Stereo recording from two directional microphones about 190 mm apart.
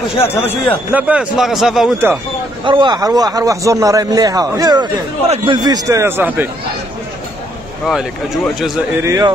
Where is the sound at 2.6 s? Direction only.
25° right (ahead or behind); by 6.5 s 10° right (ahead or behind).